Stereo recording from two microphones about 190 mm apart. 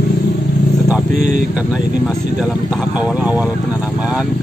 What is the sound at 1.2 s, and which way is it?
Speech, 40° right (ahead or behind).